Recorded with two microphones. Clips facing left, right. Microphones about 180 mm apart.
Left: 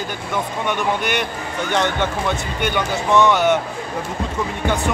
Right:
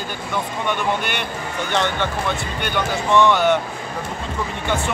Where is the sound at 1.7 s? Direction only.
15° left (ahead or behind).